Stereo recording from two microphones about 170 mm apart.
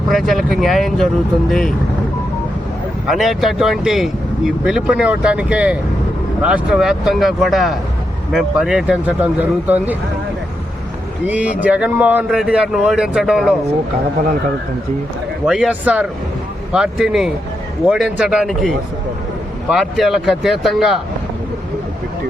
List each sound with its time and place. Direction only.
0.1 s speech: centre (ahead or behind)
3.1 s speech: centre (ahead or behind)
11.3 s speech: 10° right (ahead or behind)
15.4 s speech: 5° right (ahead or behind)
19.7 s speech: centre (ahead or behind)